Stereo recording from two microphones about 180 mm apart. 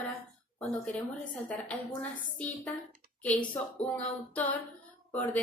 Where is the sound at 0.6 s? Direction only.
5° left (ahead or behind).